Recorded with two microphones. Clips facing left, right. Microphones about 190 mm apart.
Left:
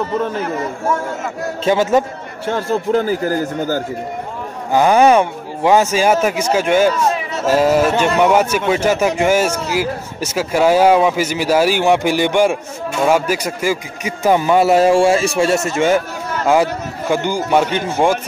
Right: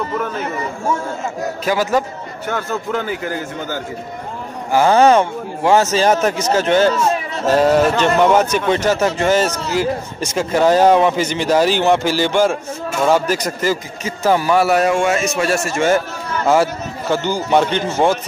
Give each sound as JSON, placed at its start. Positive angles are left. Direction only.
{"t": 1.6, "sound": "speech", "side_deg": 25}
{"t": 4.7, "sound": "a man's voice", "side_deg": 15}
{"t": 17.1, "sound": "a man's voice", "side_deg": 10}